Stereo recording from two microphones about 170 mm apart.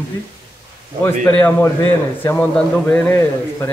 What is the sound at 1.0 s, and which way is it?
A man's voice, 15° left (ahead or behind).